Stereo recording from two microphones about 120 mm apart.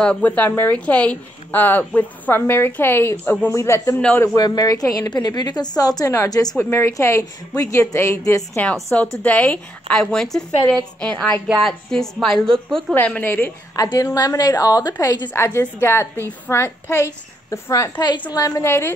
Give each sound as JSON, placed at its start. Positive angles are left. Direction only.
{"t": 0.0, "sound": "a woman's voice", "side_deg": 10}
{"t": 4.4, "sound": "a woman's voice", "side_deg": 30}
{"t": 8.6, "sound": "a woman's voice", "side_deg": 0}
{"t": 12.9, "sound": "a woman's voice", "side_deg": 15}
{"t": 13.9, "sound": "a woman's voice", "side_deg": 30}
{"t": 15.3, "sound": "a woman's voice", "side_deg": 20}
{"t": 18.3, "sound": "a woman's voice", "side_deg": 25}